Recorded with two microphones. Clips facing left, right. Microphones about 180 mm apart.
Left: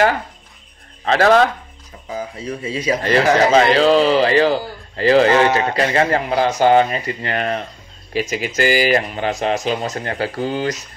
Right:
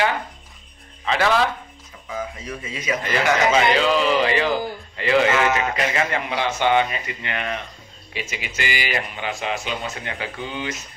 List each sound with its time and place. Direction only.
1.0 s a man's voice: 40° left (ahead or behind)